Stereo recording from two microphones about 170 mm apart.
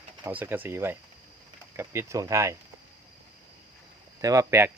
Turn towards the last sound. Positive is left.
turn(degrees=-15)  # may be behind; listen again after turning